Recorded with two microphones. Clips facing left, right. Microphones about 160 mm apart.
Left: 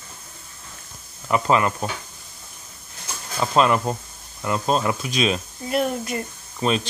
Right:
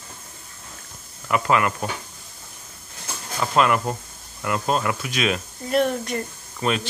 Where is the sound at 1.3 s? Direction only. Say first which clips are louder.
Left 1 dB; 25° left (ahead or behind).